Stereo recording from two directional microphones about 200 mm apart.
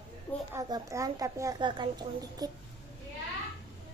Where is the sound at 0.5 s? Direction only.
15° right (ahead or behind).